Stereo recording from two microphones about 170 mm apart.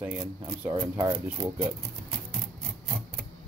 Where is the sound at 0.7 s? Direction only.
25° right (ahead or behind).